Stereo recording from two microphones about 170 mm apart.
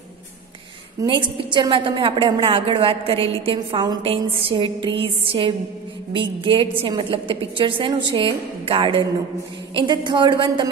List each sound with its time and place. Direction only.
1.0 s a woman's voice: 25° right (ahead or behind)